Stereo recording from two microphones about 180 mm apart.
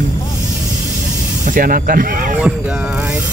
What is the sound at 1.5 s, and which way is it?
Speech, 55° right (ahead or behind).